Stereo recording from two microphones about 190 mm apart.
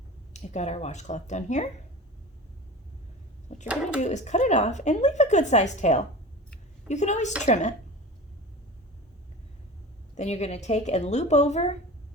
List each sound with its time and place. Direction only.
0.3 s a woman's voice: 35° left (ahead or behind)
3.5 s bird: 40° left (ahead or behind)
4.0 s a woman's voice: 40° left (ahead or behind)
10.2 s a woman's voice: 35° left (ahead or behind)